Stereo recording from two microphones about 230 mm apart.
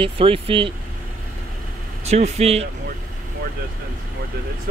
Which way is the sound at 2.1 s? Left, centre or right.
Right.